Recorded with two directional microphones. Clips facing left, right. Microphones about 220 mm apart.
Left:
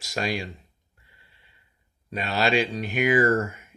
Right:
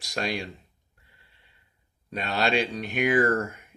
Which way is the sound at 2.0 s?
5° left (ahead or behind).